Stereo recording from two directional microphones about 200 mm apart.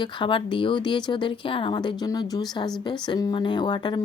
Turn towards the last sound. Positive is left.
turn(degrees=20)  # may be behind; listen again after turning